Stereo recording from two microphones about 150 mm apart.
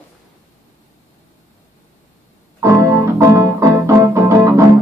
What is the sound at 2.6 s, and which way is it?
Keyboard, 20° right (ahead or behind).